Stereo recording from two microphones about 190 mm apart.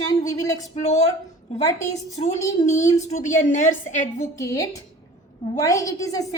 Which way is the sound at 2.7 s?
15° left (ahead or behind).